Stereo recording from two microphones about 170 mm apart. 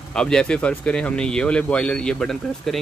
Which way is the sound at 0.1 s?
5° left (ahead or behind).